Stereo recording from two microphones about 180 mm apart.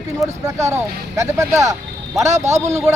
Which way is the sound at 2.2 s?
40° right (ahead or behind).